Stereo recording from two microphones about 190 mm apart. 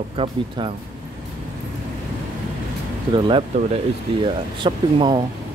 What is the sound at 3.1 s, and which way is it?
Speech, 25° right (ahead or behind).